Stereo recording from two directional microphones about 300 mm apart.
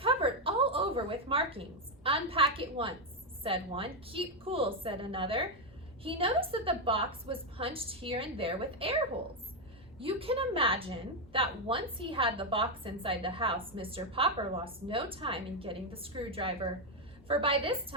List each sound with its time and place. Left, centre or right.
0.0 s a sound: centre
2.0 s a woman's voice: centre
10.0 s a woman's voice: centre